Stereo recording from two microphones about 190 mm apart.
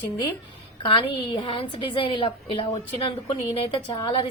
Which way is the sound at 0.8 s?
25° left (ahead or behind).